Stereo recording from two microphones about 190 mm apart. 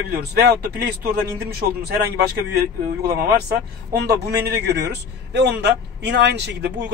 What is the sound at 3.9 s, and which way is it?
A man's voice, 60° right (ahead or behind).